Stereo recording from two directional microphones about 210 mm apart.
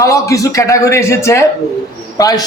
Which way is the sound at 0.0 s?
15° left (ahead or behind).